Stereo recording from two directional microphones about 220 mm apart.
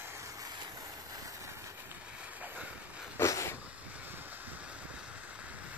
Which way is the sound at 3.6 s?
5° right (ahead or behind).